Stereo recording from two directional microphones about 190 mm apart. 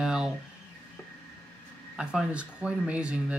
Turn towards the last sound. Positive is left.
turn(degrees=-5)  # may be behind; listen again after turning